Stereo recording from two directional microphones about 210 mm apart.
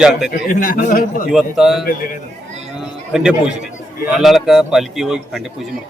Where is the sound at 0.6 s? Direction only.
40° left (ahead or behind).